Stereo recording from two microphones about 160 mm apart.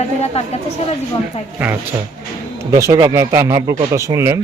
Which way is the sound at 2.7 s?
20° right (ahead or behind).